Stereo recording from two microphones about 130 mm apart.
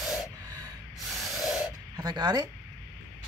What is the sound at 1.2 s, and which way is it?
Spray, centre (ahead or behind).